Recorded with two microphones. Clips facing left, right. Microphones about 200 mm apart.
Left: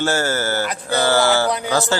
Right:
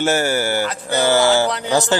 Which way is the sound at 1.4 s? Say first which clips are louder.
Left 1 dB; 10° left (ahead or behind).